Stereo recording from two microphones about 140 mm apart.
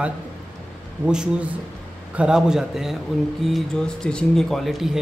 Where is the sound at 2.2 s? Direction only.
5° right (ahead or behind).